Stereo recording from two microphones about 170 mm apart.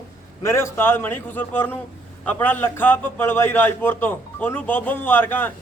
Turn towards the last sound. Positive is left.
turn(degrees=10)  # may be behind; listen again after turning